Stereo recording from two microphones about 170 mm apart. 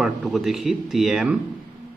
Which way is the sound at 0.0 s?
Centre (ahead or behind).